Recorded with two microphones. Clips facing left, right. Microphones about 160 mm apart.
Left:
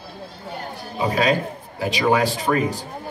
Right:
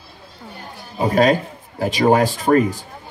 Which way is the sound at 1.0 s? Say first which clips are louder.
Right 4 dB; 45° right (ahead or behind).